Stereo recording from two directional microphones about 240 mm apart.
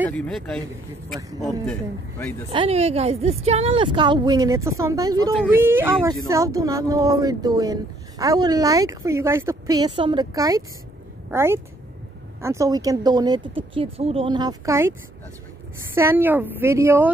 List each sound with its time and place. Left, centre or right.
0.2 s a man's voice: centre
2.5 s a woman's voice: right